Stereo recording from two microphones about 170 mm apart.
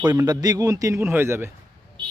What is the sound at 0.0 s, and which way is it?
A man's voice, 20° right (ahead or behind).